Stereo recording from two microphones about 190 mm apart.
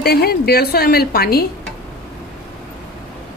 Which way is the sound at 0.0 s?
55° left (ahead or behind).